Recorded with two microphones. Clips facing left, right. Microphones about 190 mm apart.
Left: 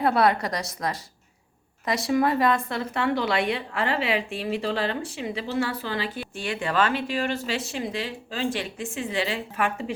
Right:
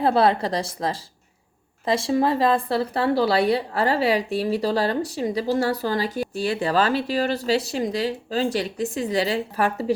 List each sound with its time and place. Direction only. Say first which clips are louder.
0.0 s a woman's voice: right 3 dB; 30° right (ahead or behind)